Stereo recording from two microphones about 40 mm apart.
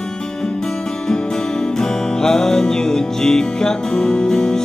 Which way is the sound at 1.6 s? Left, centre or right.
Centre.